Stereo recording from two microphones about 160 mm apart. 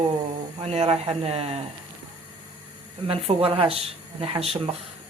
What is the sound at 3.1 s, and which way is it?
Speech, 35° right (ahead or behind).